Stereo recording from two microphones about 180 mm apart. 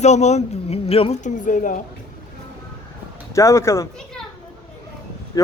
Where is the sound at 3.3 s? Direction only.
15° left (ahead or behind).